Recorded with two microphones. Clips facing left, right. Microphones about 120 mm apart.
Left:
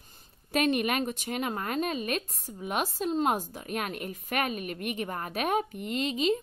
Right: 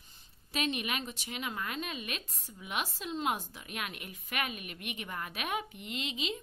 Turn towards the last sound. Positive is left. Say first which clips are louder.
# left 10 dB
turn(degrees=45)  # may be behind; listen again after turning